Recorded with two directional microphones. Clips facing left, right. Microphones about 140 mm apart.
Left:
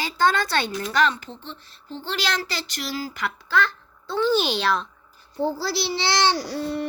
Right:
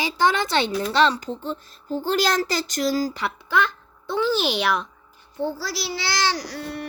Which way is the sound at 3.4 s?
20° right (ahead or behind).